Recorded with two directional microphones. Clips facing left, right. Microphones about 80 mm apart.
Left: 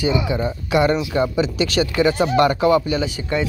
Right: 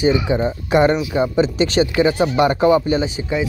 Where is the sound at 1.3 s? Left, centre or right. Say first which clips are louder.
Right 3 dB; right.